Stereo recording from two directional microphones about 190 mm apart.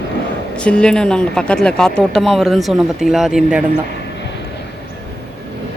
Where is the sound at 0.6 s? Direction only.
5° left (ahead or behind).